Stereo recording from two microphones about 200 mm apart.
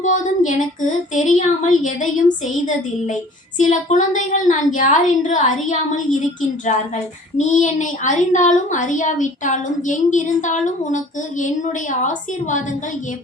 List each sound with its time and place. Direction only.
0.0 s a woman's voice: 40° left (ahead or behind)